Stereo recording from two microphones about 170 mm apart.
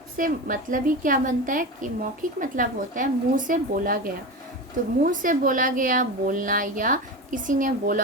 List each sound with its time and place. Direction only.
0.2 s a woman's voice: 55° right (ahead or behind)